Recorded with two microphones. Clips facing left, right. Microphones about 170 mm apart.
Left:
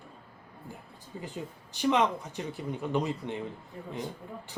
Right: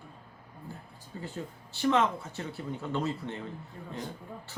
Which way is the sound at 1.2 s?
15° left (ahead or behind).